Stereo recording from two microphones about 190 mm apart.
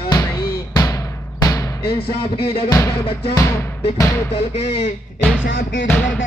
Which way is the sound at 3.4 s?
15° left (ahead or behind).